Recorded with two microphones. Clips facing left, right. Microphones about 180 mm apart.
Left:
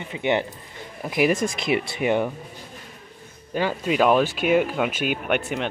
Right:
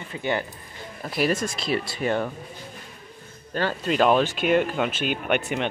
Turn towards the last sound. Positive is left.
turn(degrees=5)  # may be behind; listen again after turning